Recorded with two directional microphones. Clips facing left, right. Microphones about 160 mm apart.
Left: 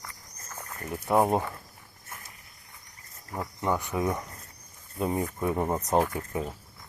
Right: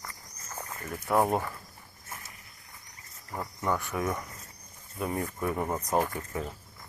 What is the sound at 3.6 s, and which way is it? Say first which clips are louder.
Speech: left 2 dB; 20° left (ahead or behind).